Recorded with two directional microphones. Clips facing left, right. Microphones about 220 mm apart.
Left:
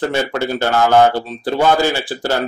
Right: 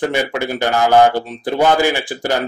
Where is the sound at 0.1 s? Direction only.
15° right (ahead or behind).